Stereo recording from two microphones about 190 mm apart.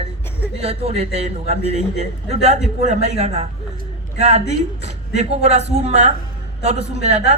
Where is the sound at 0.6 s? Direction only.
30° right (ahead or behind).